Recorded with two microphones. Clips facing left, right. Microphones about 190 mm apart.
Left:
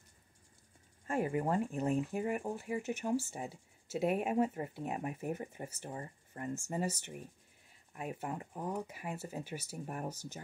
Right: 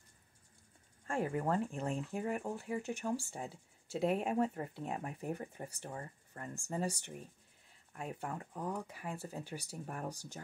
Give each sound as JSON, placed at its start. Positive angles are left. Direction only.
{"t": 1.0, "sound": "speech", "side_deg": 5}
{"t": 2.9, "sound": "speech", "side_deg": 20}
{"t": 3.3, "sound": "speech", "side_deg": 5}
{"t": 5.7, "sound": "speech", "side_deg": 20}
{"t": 8.8, "sound": "speech", "side_deg": 5}
{"t": 9.4, "sound": "speech", "side_deg": 20}
{"t": 10.0, "sound": "speech", "side_deg": 20}